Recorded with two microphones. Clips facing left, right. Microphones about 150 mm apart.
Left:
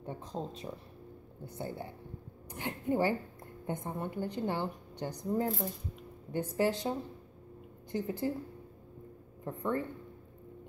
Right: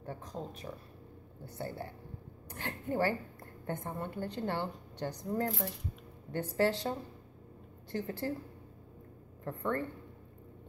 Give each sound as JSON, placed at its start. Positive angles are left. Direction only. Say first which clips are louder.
{"t": 0.0, "sound": "a woman's voice", "louder": "left 2 dB", "side_deg": 20}
{"t": 9.4, "sound": "a woman's voice", "louder": "left 1 dB", "side_deg": 15}